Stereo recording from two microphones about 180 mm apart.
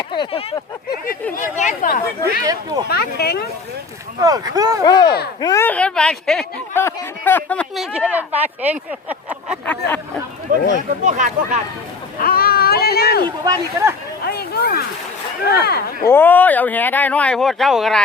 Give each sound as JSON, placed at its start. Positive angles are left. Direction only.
{"t": 0.1, "sound": "a sound", "side_deg": 30}
{"t": 1.3, "sound": "speech", "side_deg": 45}
{"t": 2.4, "sound": "speech", "side_deg": -20}
{"t": 2.9, "sound": "speech", "side_deg": 60}
{"t": 4.2, "sound": "speech", "side_deg": -20}
{"t": 4.8, "sound": "speech", "side_deg": 25}
{"t": 7.9, "sound": "speech", "side_deg": -10}
{"t": 9.6, "sound": "speech", "side_deg": 10}
{"t": 10.5, "sound": "speech", "side_deg": -50}
{"t": 12.2, "sound": "a sound", "side_deg": 55}
{"t": 13.4, "sound": "speech", "side_deg": -20}
{"t": 14.3, "sound": "a sound", "side_deg": 60}
{"t": 15.6, "sound": "speech", "side_deg": 60}
{"t": 16.0, "sound": "speech", "side_deg": 10}